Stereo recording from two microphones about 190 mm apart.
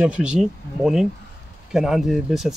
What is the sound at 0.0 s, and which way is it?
Speech, 5° right (ahead or behind).